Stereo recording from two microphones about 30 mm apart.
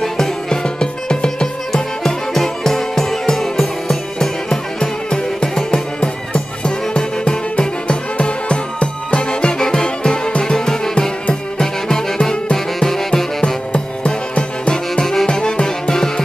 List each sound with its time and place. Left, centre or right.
0.0 s music: centre
1.7 s music: centre
4.7 s music: left
6.6 s music: left; by 13.2 s centre
14.7 s music: centre
15.2 s music: left